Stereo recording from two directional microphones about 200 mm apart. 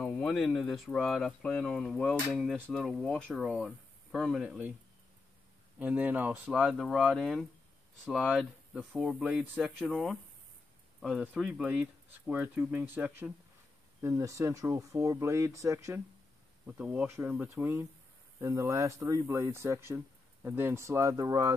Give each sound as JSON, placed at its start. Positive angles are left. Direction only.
{"t": 0.0, "sound": "speech", "side_deg": 5}
{"t": 5.8, "sound": "speech", "side_deg": -5}